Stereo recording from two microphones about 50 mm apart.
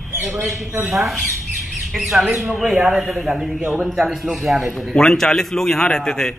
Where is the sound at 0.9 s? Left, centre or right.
Centre.